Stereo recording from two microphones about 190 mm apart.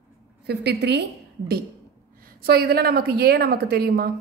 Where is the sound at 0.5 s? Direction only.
60° right (ahead or behind).